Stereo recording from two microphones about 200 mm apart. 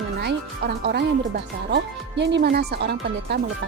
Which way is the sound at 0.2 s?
55° right (ahead or behind).